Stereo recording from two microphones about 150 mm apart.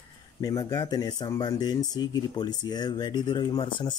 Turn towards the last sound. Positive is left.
turn(degrees=35)  # may be behind; listen again after turning